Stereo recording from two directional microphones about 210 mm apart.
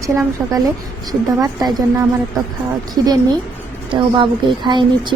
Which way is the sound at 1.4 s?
15° right (ahead or behind).